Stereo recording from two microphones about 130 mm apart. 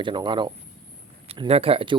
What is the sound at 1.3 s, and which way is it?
Speech, 50° right (ahead or behind).